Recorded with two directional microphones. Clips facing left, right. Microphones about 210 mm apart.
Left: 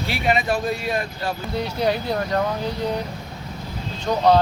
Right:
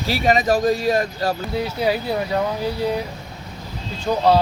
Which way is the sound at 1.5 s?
5° right (ahead or behind).